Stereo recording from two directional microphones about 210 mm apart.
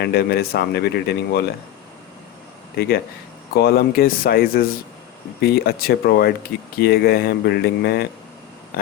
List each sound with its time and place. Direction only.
0.0 s speech: 50° left (ahead or behind)
2.7 s speech: 50° left (ahead or behind)